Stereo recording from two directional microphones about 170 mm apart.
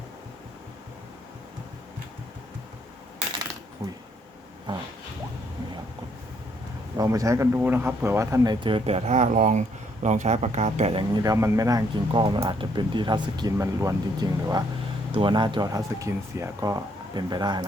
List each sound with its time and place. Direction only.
6.9 s speech: 20° right (ahead or behind)
8.6 s speech: 35° right (ahead or behind)
11.2 s speech: 20° right (ahead or behind)